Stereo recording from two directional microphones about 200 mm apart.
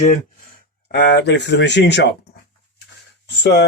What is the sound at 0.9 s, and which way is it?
Speech, 60° left (ahead or behind).